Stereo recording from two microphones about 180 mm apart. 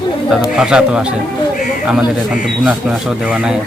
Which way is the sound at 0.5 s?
5° right (ahead or behind).